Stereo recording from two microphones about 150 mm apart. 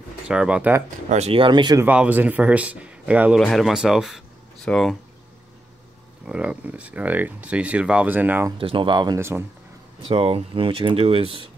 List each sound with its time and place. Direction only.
0.3 s speech: 5° right (ahead or behind)
1.1 s speech: 40° right (ahead or behind)
1.8 s speech: 10° right (ahead or behind)
6.2 s speech: 10° right (ahead or behind)
8.5 s speech: 35° right (ahead or behind)
10.0 s speech: 40° right (ahead or behind)